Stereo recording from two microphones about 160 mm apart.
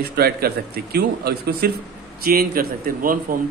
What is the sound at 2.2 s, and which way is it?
A man's voice, 65° right (ahead or behind).